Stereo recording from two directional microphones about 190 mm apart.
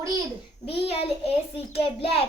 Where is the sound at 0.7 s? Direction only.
30° left (ahead or behind).